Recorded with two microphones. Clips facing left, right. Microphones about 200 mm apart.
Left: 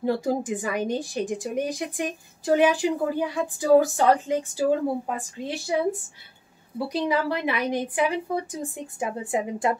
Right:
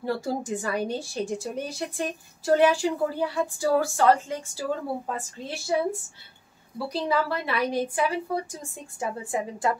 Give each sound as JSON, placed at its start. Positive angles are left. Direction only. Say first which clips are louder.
{"t": 0.0, "sound": "a woman's voice", "louder": "left 4 dB", "side_deg": 15}
{"t": 6.9, "sound": "a woman's voice", "louder": "left 1 dB", "side_deg": 15}